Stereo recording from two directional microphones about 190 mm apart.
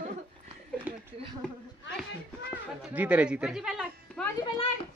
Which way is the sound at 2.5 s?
10° right (ahead or behind).